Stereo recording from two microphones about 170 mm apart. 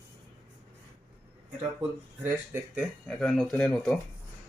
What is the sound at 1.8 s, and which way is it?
Speech, 10° right (ahead or behind).